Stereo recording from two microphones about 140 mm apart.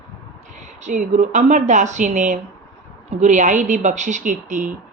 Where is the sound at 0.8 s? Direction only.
60° right (ahead or behind).